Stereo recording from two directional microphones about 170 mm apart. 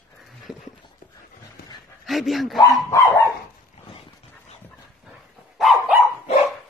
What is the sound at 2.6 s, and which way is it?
Speech, 15° left (ahead or behind).